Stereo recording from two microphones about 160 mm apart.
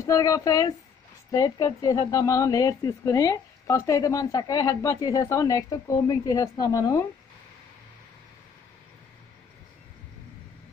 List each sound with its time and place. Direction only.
0.0 s a woman's voice: 20° left (ahead or behind)